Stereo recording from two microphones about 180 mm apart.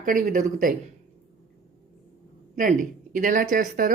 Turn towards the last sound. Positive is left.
turn(degrees=-50)  # may be behind; listen again after turning